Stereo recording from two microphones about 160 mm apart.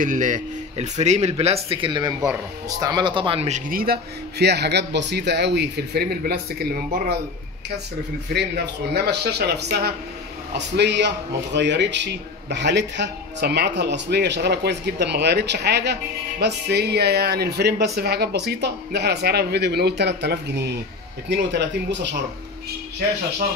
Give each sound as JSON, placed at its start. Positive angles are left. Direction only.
{"t": 0.0, "sound": "speech", "side_deg": -55}
{"t": 3.7, "sound": "a man's voice", "side_deg": -70}
{"t": 8.3, "sound": "a man's voice", "side_deg": -90}